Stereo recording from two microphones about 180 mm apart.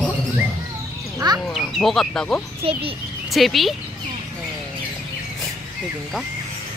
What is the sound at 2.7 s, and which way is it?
Speech, 30° right (ahead or behind).